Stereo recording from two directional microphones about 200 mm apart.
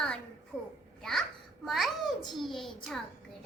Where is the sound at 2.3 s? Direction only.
Centre (ahead or behind).